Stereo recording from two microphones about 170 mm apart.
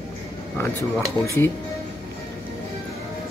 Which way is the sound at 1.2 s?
15° left (ahead or behind).